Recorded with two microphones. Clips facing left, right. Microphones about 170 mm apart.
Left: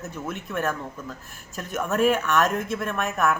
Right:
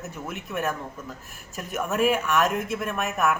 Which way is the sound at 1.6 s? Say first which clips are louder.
Left 2 dB; centre (ahead or behind).